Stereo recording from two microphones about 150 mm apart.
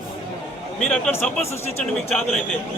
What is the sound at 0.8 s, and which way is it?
Speech, 5° left (ahead or behind).